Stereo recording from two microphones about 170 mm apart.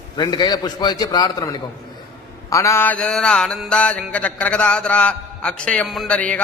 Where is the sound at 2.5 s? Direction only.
20° left (ahead or behind).